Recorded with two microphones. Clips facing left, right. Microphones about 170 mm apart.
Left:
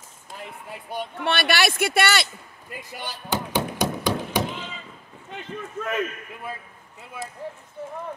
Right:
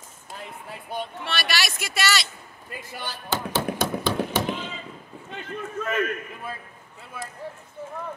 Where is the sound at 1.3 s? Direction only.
55° left (ahead or behind).